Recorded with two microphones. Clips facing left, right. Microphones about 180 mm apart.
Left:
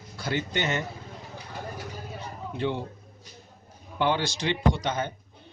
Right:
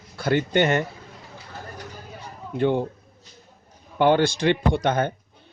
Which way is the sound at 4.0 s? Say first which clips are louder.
Right 8 dB; 55° right (ahead or behind).